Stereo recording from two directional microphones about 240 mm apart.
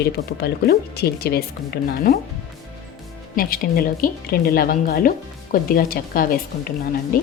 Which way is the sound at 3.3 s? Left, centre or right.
Left.